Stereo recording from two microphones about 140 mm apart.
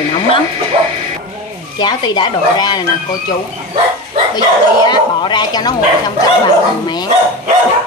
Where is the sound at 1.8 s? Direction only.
30° left (ahead or behind).